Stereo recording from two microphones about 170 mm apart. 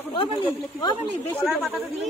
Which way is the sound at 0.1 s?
30° left (ahead or behind).